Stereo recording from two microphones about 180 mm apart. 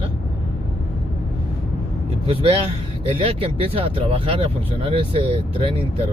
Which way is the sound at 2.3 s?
30° right (ahead or behind).